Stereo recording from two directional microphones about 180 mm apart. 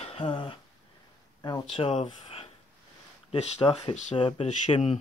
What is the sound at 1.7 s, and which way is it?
Speech, 30° left (ahead or behind).